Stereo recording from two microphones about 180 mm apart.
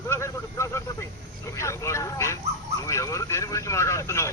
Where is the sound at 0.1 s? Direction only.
15° left (ahead or behind).